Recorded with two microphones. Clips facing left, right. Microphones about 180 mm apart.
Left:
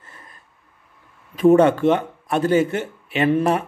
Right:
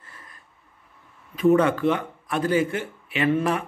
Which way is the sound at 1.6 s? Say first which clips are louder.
Left 6 dB; 25° left (ahead or behind).